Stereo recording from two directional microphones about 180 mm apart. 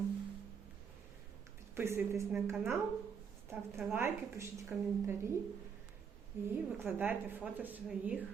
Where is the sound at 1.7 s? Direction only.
15° right (ahead or behind).